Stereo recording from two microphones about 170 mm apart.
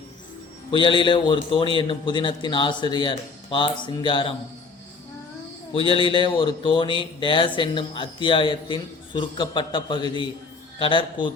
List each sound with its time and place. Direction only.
0.7 s speech: 30° left (ahead or behind)
5.7 s speech: 30° left (ahead or behind)